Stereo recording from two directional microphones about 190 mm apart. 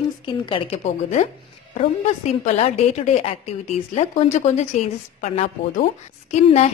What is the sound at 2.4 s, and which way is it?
A woman's voice, 35° left (ahead or behind).